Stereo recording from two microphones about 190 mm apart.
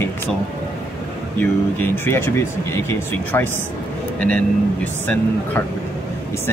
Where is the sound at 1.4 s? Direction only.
10° left (ahead or behind).